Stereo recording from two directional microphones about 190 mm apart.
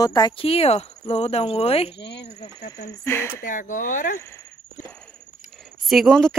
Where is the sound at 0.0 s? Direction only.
20° left (ahead or behind).